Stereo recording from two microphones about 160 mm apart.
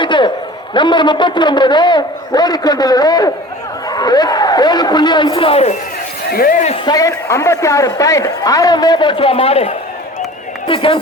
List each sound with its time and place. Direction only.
0.0 s a sound: 30° left (ahead or behind)
0.7 s a woman's voice: 30° left (ahead or behind)
6.3 s speech: 60° left (ahead or behind)
6.8 s a woman's voice: 20° left (ahead or behind)